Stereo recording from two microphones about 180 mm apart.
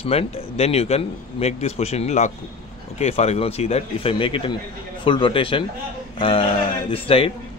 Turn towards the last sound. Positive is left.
turn(degrees=30)  # may be behind; listen again after turning